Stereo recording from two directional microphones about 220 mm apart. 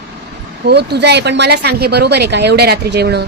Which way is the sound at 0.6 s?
50° right (ahead or behind).